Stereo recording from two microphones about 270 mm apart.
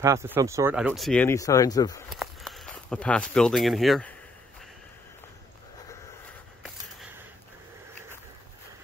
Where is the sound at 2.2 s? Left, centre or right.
Centre.